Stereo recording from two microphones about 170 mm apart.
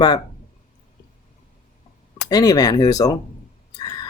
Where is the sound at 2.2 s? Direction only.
20° left (ahead or behind).